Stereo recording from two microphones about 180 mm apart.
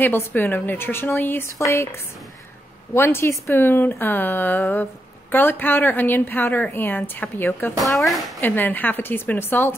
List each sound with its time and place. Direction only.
0.0 s a woman's voice: 10° left (ahead or behind)
7.8 s speech: centre (ahead or behind)
8.4 s a woman's voice: 10° left (ahead or behind)